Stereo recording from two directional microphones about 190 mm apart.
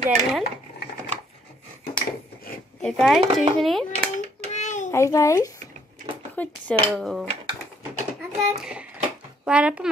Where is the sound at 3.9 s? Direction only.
35° right (ahead or behind).